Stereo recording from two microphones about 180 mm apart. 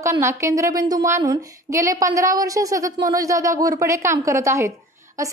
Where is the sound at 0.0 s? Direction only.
15° right (ahead or behind).